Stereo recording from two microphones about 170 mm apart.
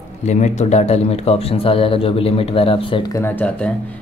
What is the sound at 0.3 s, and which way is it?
Speech, 45° left (ahead or behind).